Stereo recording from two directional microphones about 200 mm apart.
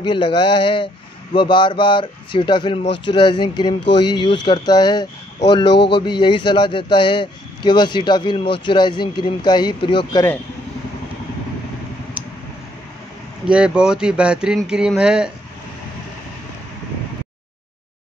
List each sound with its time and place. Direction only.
0.0 s a man's voice: 25° left (ahead or behind)
13.5 s speech: 5° right (ahead or behind)